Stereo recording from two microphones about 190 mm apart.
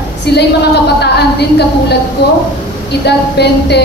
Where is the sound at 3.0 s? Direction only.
60° left (ahead or behind).